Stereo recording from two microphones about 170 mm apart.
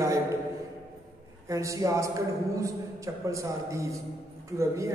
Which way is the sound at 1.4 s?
20° right (ahead or behind).